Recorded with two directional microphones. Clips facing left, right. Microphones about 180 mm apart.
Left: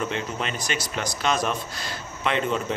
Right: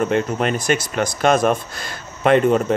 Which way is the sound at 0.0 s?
50° right (ahead or behind).